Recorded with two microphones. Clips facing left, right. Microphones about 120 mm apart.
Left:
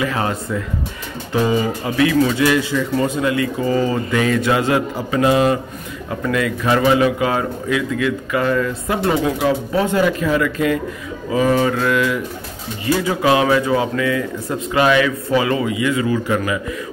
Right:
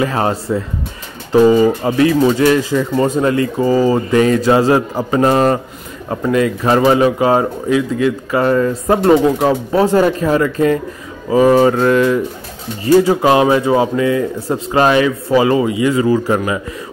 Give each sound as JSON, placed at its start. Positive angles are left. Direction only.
{"t": 0.0, "sound": "speech", "side_deg": -35}
{"t": 6.2, "sound": "speech", "side_deg": -30}